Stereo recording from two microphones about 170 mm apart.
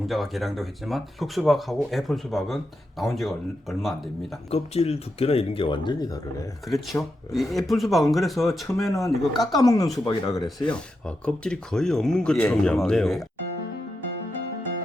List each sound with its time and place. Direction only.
0.1 s speech: centre (ahead or behind)
4.5 s speech: 35° left (ahead or behind)
6.7 s speech: centre (ahead or behind)
9.6 s speech: 20° left (ahead or behind)
10.4 s speech: 5° left (ahead or behind)